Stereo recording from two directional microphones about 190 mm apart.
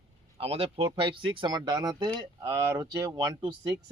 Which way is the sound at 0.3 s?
30° right (ahead or behind).